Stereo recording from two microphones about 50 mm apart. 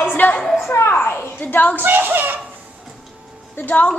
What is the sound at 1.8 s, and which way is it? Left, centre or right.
Speech, right.